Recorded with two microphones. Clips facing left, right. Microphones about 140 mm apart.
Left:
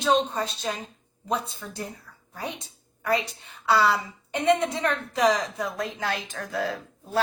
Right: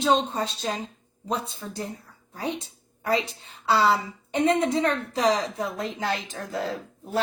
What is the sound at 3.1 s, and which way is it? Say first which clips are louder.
A woman's voice: even; 25° right (ahead or behind).